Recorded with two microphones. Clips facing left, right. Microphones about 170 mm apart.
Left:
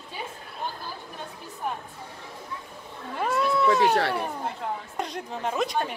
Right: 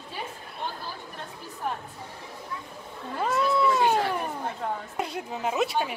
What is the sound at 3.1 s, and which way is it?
Cat, centre (ahead or behind).